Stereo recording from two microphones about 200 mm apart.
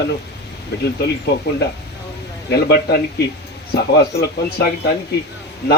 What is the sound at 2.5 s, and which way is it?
Speech, 55° left (ahead or behind).